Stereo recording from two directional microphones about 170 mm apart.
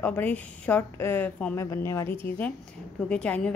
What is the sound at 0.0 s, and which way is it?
A woman's voice, 10° left (ahead or behind).